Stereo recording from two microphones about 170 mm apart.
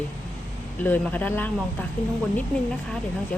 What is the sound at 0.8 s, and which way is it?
A woman's voice, 10° left (ahead or behind).